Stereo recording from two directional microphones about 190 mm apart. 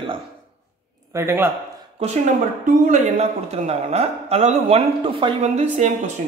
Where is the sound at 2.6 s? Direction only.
40° right (ahead or behind).